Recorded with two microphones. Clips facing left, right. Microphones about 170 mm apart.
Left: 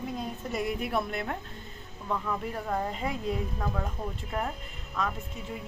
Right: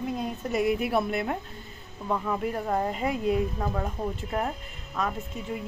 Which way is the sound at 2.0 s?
20° right (ahead or behind).